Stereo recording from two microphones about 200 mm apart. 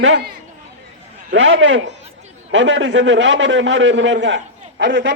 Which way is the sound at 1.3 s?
70° right (ahead or behind).